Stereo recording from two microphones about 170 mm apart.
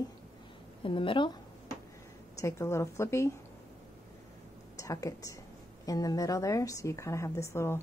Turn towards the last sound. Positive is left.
turn(degrees=15)  # may be behind; listen again after turning